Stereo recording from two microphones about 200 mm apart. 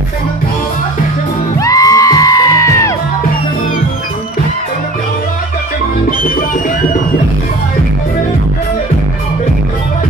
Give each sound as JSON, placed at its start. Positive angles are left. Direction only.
{"t": 1.6, "sound": "music", "side_deg": 15}